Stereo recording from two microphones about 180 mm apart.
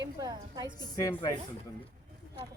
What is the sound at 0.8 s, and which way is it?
Speech, 15° left (ahead or behind).